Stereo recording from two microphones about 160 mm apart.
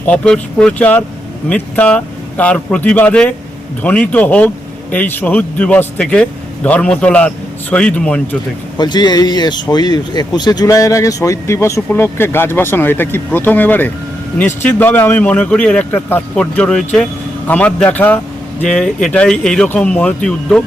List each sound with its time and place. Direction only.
0.0 s speech: 10° left (ahead or behind)
8.8 s speech: 25° left (ahead or behind); by 20.6 s 5° left (ahead or behind)